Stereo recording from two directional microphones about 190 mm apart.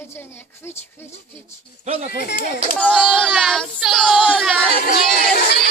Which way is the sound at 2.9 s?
5° right (ahead or behind).